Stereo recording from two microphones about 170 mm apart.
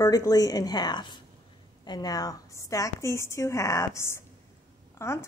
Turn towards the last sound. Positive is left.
turn(degrees=15)  # may be behind; listen again after turning